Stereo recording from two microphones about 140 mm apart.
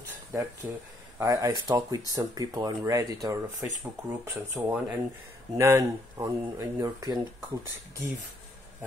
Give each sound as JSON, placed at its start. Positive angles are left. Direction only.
{"t": 0.3, "sound": "speech", "side_deg": -25}
{"t": 5.6, "sound": "speech", "side_deg": -20}